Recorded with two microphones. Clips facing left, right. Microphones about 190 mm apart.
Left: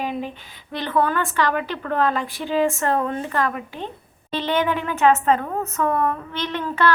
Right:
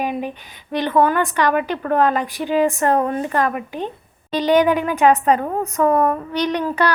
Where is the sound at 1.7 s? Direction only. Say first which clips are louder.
Right 6 dB; 45° right (ahead or behind).